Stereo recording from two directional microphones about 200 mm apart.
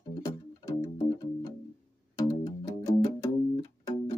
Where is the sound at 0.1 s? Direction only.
15° left (ahead or behind).